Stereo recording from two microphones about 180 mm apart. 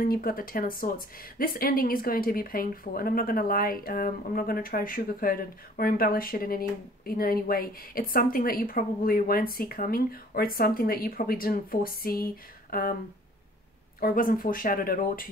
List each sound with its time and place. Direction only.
0.0 s speech: 55° left (ahead or behind)
13.9 s speech: 55° left (ahead or behind)